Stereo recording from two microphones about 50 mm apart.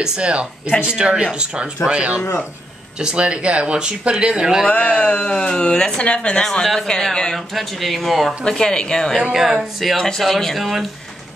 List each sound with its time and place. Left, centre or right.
0.0 s speech: right
4.6 s speech: left
6.6 s a woman's voice: centre
7.3 s speech: centre
8.5 s a woman's voice: centre
9.3 s speech: centre
9.9 s speech: centre